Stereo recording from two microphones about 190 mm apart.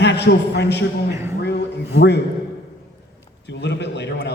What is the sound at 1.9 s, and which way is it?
Speech, 60° left (ahead or behind).